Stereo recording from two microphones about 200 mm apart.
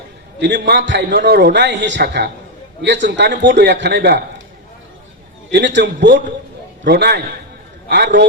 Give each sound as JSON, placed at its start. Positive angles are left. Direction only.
{"t": 0.3, "sound": "a man's voice", "side_deg": -60}
{"t": 5.5, "sound": "a man's voice", "side_deg": -60}